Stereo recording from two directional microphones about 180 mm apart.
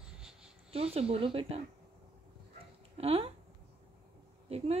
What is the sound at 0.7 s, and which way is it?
Speech, 35° right (ahead or behind).